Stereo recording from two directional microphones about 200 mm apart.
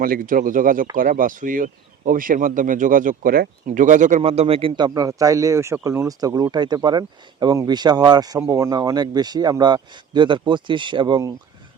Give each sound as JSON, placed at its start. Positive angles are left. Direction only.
{"t": 0.0, "sound": "a man's voice", "side_deg": -45}